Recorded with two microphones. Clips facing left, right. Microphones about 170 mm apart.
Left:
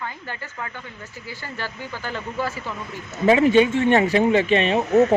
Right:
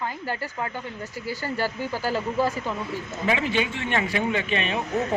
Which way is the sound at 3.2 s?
40° left (ahead or behind).